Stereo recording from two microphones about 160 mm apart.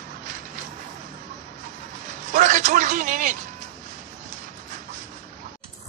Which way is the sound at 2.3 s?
50° right (ahead or behind).